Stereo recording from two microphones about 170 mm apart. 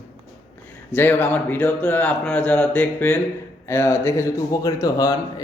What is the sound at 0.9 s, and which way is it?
Speech, 10° left (ahead or behind).